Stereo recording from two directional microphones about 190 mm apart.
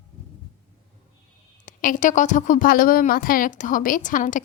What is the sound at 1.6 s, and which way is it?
A woman's voice, 45° left (ahead or behind).